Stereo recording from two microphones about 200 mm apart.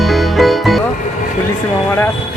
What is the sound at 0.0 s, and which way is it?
Music, centre (ahead or behind).